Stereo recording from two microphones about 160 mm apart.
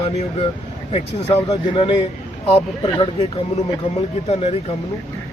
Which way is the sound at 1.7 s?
35° left (ahead or behind).